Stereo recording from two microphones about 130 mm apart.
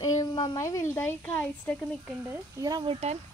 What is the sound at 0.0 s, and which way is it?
A woman's voice, 30° left (ahead or behind).